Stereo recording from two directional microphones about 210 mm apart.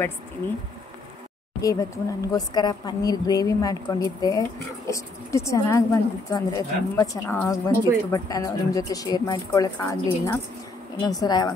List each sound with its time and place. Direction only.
1.6 s a woman's voice: 15° left (ahead or behind)